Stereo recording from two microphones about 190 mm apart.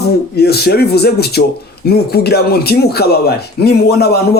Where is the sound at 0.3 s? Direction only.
55° left (ahead or behind).